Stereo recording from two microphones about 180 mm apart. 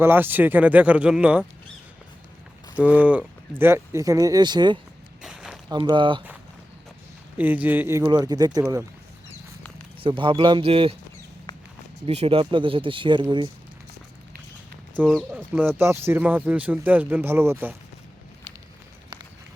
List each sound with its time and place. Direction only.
0.0 s speech: 10° right (ahead or behind)
2.7 s speech: 5° right (ahead or behind); by 4.8 s 25° right (ahead or behind)
5.2 s walk: centre (ahead or behind)
5.6 s speech: 25° right (ahead or behind)
7.3 s speech: 10° right (ahead or behind)
8.0 s speech: 25° right (ahead or behind)
10.0 s speech: 30° right (ahead or behind)
12.0 s speech: 35° right (ahead or behind)
15.0 s speech: 5° left (ahead or behind)
15.8 s speech: 15° right (ahead or behind)